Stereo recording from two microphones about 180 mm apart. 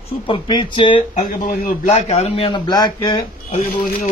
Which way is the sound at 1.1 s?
50° left (ahead or behind).